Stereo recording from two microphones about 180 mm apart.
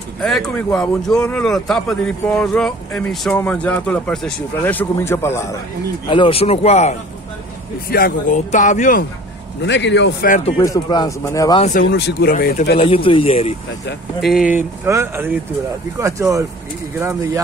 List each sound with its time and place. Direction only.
0.2 s speech: 5° left (ahead or behind)
6.0 s speech: 30° left (ahead or behind)
7.9 s speech: 55° left (ahead or behind)
8.5 s speech: 45° left (ahead or behind)
9.6 s a man's voice: 80° left
10.6 s a man's voice: 20° left (ahead or behind)
11.9 s speech: 60° left (ahead or behind)
12.7 s speech: 30° left (ahead or behind)
14.2 s speech: 5° right (ahead or behind)